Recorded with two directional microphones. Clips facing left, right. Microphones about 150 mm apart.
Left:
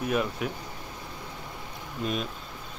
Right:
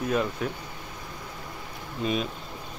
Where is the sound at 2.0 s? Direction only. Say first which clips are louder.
Right 3 dB; centre (ahead or behind).